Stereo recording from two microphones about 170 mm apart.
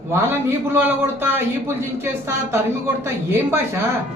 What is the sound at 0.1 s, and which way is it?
A man's voice, 10° right (ahead or behind).